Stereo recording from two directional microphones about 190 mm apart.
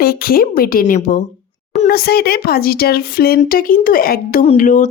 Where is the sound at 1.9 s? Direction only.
55° left (ahead or behind).